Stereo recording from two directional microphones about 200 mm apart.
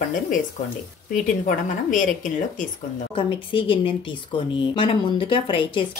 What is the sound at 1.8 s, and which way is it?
Speech, 40° left (ahead or behind).